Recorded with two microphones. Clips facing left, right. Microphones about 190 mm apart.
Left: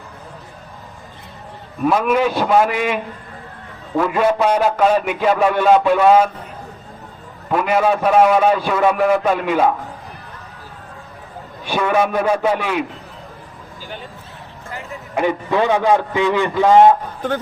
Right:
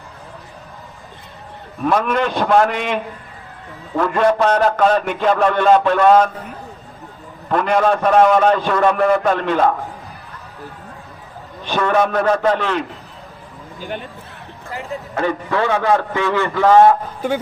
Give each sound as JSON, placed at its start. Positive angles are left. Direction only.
{"t": 1.8, "sound": "a man's voice", "side_deg": 5}
{"t": 7.5, "sound": "a man's voice", "side_deg": 5}
{"t": 11.6, "sound": "a man's voice", "side_deg": 10}
{"t": 15.1, "sound": "a man's voice", "side_deg": 15}
{"t": 17.2, "sound": "speech", "side_deg": -10}